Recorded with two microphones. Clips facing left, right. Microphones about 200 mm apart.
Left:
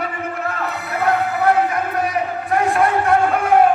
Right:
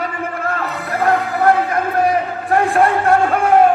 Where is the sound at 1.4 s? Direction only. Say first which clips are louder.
Right 2 dB; 55° right (ahead or behind).